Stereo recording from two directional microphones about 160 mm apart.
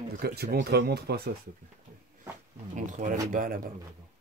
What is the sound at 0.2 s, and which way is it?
Speech, 80° right.